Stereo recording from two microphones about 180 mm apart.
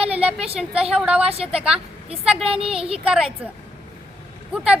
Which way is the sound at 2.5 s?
30° right (ahead or behind).